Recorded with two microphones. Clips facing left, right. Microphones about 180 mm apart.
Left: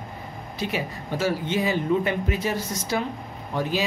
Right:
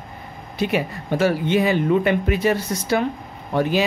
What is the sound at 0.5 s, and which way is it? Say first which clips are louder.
Speech: right 7 dB; 60° right (ahead or behind).